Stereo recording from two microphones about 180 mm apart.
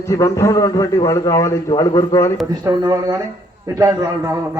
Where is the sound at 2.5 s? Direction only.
20° right (ahead or behind).